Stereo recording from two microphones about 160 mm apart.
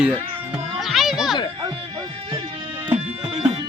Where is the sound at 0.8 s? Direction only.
Centre (ahead or behind).